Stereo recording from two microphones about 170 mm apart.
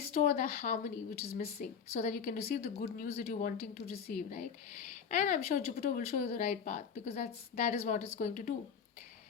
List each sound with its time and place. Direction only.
0.0 s speech: 50° left (ahead or behind)
5.1 s speech: 45° left (ahead or behind)
5.5 s speech: 60° left (ahead or behind)
6.1 s speech: 45° left (ahead or behind)